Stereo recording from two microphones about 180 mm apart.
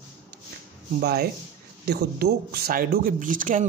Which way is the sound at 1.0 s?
60° right (ahead or behind).